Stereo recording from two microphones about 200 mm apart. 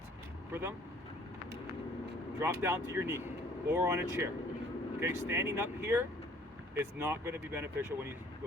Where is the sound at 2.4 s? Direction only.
10° right (ahead or behind).